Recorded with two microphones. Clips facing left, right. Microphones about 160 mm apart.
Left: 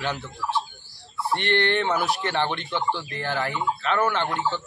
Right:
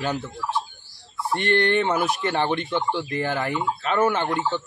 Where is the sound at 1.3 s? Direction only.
50° right (ahead or behind).